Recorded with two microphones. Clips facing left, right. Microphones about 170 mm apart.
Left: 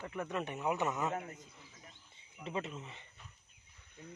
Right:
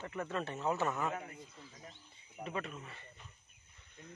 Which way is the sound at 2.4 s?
25° left (ahead or behind).